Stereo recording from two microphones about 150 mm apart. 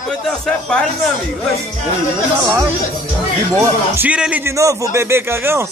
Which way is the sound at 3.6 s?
10° right (ahead or behind).